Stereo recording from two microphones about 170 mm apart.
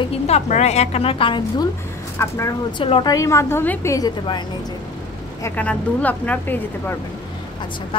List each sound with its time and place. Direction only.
0.0 s a woman's voice: 40° left (ahead or behind)
2.1 s speech: 15° left (ahead or behind)
2.8 s a woman's voice: 30° left (ahead or behind)
5.4 s speech: 10° left (ahead or behind)
7.9 s a woman's voice: 30° left (ahead or behind)